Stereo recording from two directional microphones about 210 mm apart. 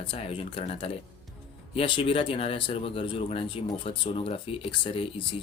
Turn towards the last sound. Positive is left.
turn(degrees=25)  # may be behind; listen again after turning